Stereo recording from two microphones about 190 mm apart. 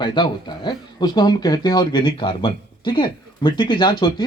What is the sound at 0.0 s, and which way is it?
Speech, 25° left (ahead or behind).